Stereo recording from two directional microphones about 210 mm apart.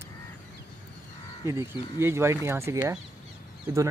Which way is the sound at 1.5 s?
15° right (ahead or behind).